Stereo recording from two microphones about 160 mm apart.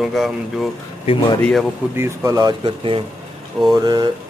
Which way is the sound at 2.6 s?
35° right (ahead or behind).